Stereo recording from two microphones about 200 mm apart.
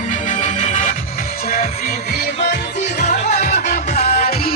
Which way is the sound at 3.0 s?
35° left (ahead or behind).